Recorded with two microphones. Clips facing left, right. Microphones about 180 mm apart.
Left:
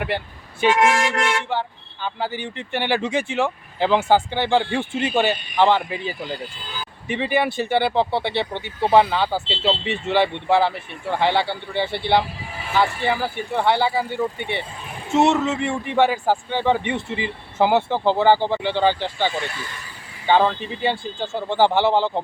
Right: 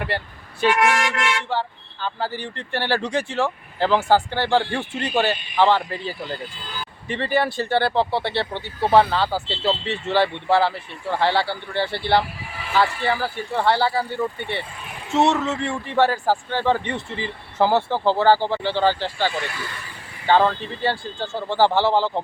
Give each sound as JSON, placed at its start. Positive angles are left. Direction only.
{"t": 0.6, "sound": "speech", "side_deg": 20}
{"t": 2.0, "sound": "speech", "side_deg": 15}
{"t": 4.9, "sound": "speech", "side_deg": 0}
{"t": 5.5, "sound": "speech", "side_deg": 15}